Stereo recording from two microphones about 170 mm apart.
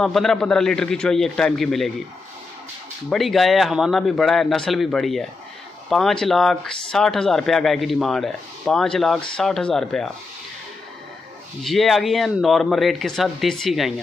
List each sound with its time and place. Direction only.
0.0 s speech: centre (ahead or behind)
3.1 s speech: centre (ahead or behind)
11.6 s speech: centre (ahead or behind)